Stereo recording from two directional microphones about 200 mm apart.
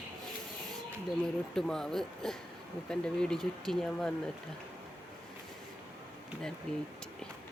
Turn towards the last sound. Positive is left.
turn(degrees=5)  # may be behind; listen again after turning